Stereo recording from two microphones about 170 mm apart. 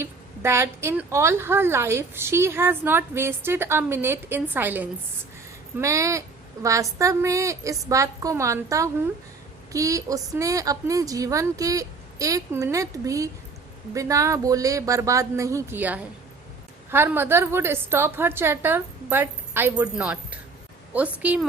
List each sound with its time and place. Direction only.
0.0 s a woman's voice: 15° right (ahead or behind)